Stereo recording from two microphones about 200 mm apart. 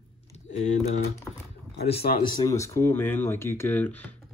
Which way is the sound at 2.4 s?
15° left (ahead or behind).